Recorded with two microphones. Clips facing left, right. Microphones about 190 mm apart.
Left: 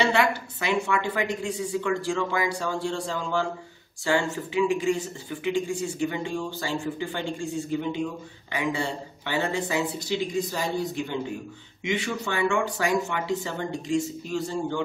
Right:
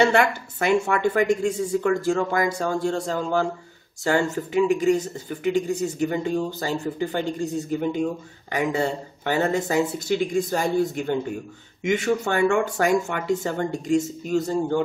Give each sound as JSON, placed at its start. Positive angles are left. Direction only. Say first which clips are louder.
{"t": 0.0, "sound": "speech", "louder": "right 4 dB", "side_deg": -50}